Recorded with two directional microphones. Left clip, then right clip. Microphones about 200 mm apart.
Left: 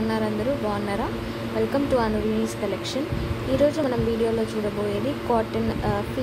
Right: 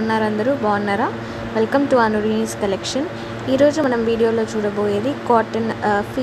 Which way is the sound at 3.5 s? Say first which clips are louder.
Right 6 dB; 20° right (ahead or behind).